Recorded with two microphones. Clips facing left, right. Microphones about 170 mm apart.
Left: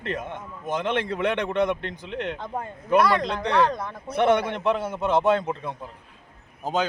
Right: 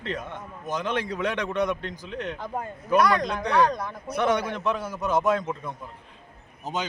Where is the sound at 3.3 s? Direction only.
30° left (ahead or behind).